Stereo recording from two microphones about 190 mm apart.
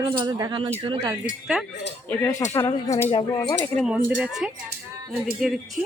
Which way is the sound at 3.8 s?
5° right (ahead or behind).